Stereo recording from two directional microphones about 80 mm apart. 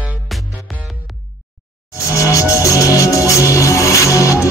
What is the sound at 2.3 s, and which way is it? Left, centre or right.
Music, left.